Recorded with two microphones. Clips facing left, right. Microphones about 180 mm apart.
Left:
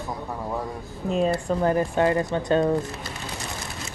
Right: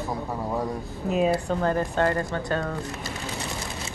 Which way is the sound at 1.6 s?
15° left (ahead or behind).